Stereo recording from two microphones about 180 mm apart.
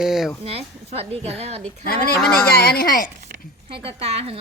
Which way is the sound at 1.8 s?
55° left (ahead or behind).